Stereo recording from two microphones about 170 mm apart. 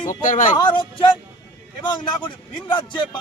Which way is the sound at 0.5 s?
30° left (ahead or behind).